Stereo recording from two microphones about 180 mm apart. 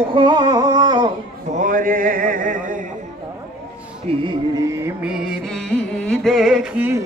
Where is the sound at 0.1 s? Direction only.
25° right (ahead or behind).